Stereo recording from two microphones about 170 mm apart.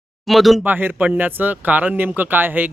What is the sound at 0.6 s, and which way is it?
Speech, 10° right (ahead or behind).